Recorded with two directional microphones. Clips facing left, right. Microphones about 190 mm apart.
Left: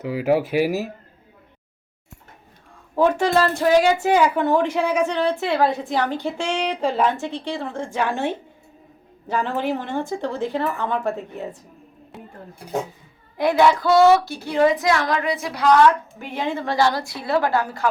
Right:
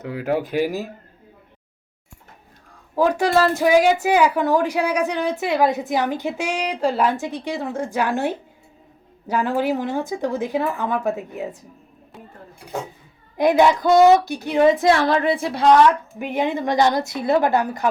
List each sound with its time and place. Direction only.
0.0 s speech: 5° left (ahead or behind)
2.9 s a woman's voice: 5° right (ahead or behind)
13.3 s a woman's voice: 20° right (ahead or behind)